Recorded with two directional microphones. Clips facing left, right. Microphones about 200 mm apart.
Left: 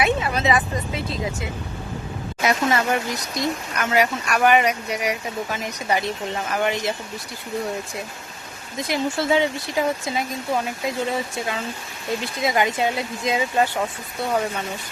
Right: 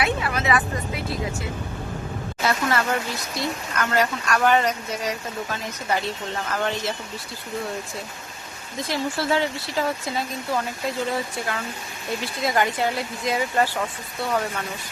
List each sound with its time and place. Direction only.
0.0 s speech: 20° left (ahead or behind)
8.9 s speech: 20° left (ahead or behind)